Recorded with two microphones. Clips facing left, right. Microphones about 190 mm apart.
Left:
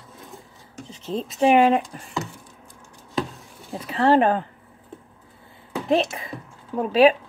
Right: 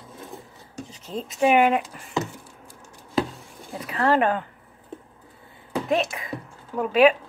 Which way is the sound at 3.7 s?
30° left (ahead or behind).